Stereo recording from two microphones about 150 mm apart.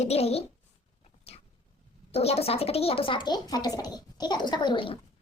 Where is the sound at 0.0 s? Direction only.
45° left (ahead or behind).